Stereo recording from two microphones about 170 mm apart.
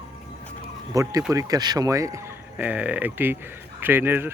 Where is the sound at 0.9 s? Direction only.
20° right (ahead or behind).